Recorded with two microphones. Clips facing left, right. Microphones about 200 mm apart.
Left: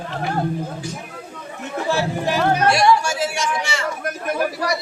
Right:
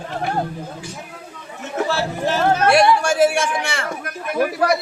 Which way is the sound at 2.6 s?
55° right (ahead or behind).